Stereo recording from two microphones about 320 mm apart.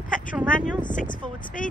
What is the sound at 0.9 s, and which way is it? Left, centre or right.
Speech, left.